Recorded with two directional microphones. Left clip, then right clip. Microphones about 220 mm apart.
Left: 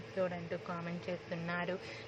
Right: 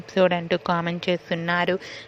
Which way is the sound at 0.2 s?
45° right (ahead or behind).